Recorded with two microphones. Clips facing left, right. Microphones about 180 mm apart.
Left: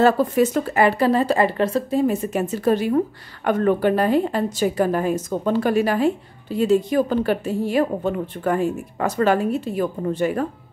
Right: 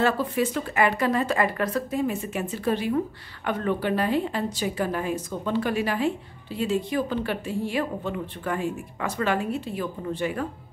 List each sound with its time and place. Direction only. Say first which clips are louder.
0.0 s a woman's voice: left 7 dB; 45° left (ahead or behind)